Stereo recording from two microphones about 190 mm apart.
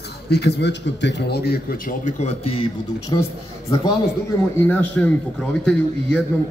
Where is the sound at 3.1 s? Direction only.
25° left (ahead or behind).